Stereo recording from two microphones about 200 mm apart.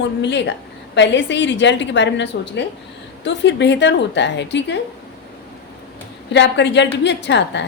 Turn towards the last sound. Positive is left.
turn(degrees=60)  # may be behind; listen again after turning